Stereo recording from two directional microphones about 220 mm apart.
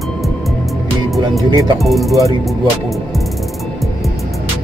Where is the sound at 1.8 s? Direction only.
Centre (ahead or behind).